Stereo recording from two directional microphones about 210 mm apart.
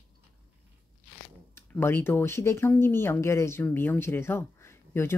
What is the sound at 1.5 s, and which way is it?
Speech, 10° left (ahead or behind).